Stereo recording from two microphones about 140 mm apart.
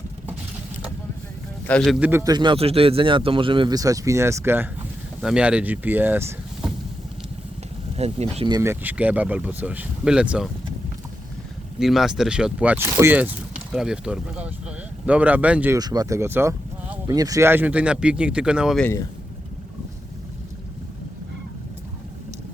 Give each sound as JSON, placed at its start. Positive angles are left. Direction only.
{"t": 1.6, "sound": "a man's voice", "side_deg": 5}
{"t": 2.0, "sound": "speech", "side_deg": -15}
{"t": 2.2, "sound": "speech", "side_deg": -30}
{"t": 7.9, "sound": "speech", "side_deg": -50}
{"t": 8.6, "sound": "speech", "side_deg": -15}
{"t": 11.8, "sound": "speech", "side_deg": 0}
{"t": 15.8, "sound": "speech", "side_deg": -30}